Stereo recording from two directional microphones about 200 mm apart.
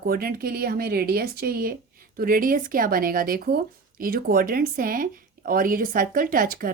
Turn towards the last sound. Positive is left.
turn(degrees=-45)  # may be behind; listen again after turning